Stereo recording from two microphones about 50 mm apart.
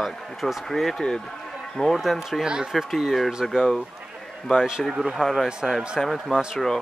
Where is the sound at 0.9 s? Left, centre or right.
Centre.